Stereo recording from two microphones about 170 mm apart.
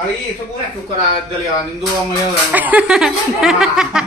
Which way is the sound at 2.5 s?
10° right (ahead or behind).